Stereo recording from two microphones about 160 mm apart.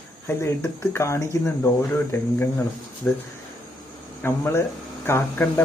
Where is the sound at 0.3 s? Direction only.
15° left (ahead or behind).